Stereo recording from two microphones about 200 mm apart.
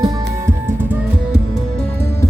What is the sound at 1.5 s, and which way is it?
Music, 5° left (ahead or behind).